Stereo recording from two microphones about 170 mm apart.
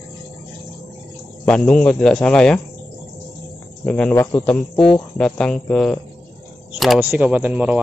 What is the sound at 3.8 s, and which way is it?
Speech, 5° left (ahead or behind).